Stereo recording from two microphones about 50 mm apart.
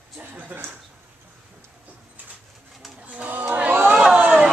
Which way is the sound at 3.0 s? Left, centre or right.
Right.